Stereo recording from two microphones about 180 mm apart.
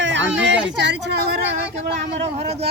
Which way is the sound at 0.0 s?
90° right.